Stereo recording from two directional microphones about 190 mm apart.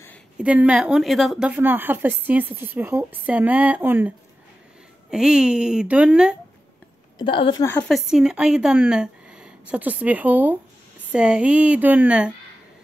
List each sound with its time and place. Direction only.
0.4 s a woman's voice: 5° right (ahead or behind)
5.1 s a woman's voice: 5° right (ahead or behind)
7.2 s a woman's voice: 25° left (ahead or behind)
7.9 s a woman's voice: 5° right (ahead or behind)